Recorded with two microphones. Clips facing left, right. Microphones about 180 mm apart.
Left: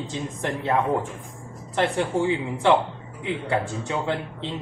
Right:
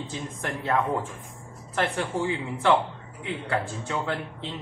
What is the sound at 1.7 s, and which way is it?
Speech, 20° left (ahead or behind).